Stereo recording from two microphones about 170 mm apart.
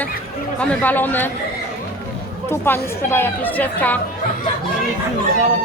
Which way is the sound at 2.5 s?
15° left (ahead or behind).